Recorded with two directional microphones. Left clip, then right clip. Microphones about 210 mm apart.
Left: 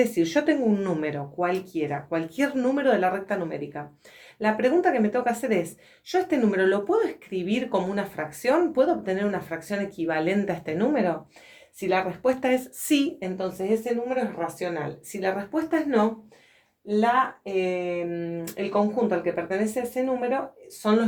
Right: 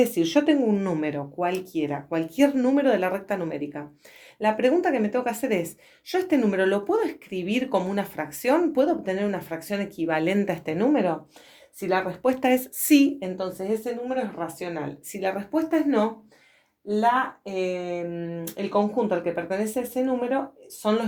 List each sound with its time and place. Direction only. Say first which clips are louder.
0.0 s speech: right 1 dB; 30° right (ahead or behind)
17.0 s speech: even; 40° right (ahead or behind)